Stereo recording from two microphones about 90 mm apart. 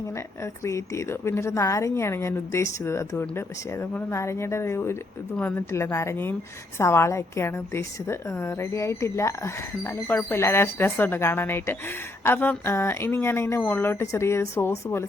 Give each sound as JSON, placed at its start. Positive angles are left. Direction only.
{"t": 0.6, "sound": "a woman's voice", "side_deg": 30}